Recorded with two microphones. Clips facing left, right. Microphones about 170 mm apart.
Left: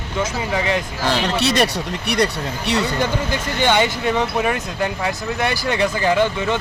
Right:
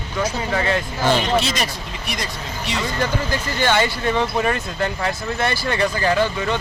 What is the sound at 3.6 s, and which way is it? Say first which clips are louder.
Speech: left 2 dB; 15° left (ahead or behind).